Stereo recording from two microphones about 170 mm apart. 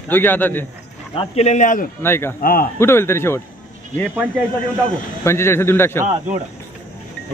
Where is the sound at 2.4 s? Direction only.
60° left (ahead or behind).